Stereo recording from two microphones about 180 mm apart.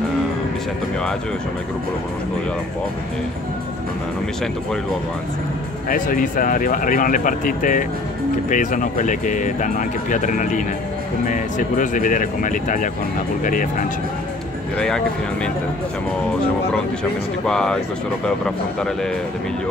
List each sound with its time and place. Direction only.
5.9 s speech: 50° left (ahead or behind)
17.5 s speech: 5° left (ahead or behind)